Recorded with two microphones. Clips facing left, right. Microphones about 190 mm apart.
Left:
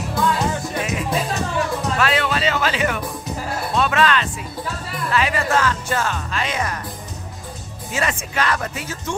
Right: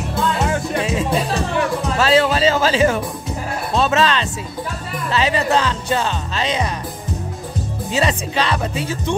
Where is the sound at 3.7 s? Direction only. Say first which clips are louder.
Right 2 dB; 25° right (ahead or behind).